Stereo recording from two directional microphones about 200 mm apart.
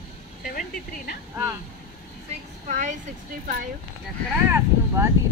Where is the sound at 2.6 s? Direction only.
35° right (ahead or behind).